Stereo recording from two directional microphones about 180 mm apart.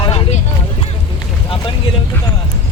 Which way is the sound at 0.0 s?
30° left (ahead or behind).